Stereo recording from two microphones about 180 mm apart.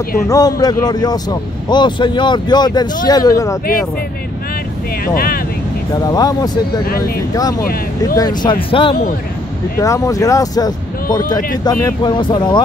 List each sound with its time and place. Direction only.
0.3 s a man's voice: 20° left (ahead or behind)
5.0 s speech: 55° left (ahead or behind)
6.0 s a man's voice: 20° left (ahead or behind)
9.8 s a man's voice: 15° left (ahead or behind)